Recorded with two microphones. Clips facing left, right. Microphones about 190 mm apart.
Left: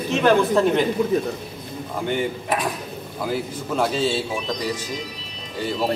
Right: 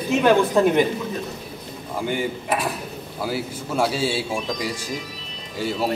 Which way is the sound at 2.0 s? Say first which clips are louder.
Left 1 dB; 5° right (ahead or behind).